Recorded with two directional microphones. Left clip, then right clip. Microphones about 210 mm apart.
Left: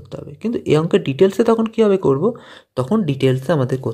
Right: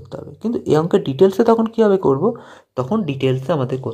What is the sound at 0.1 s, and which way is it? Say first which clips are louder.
Speech: even; 25° left (ahead or behind).